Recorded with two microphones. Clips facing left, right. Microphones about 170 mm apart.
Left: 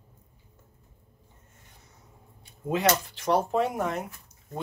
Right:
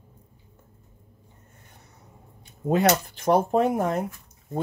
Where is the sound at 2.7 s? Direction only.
50° right (ahead or behind).